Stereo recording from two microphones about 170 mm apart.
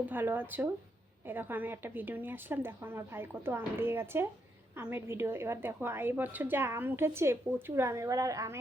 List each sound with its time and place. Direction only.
0.0 s a woman's voice: 10° right (ahead or behind)